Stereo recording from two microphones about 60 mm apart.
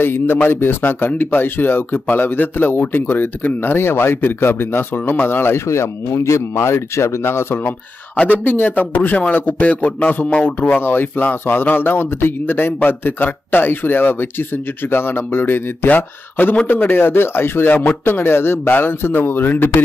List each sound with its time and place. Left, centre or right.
0.0 s speech: left
8.5 s a man's voice: left
10.8 s speech: left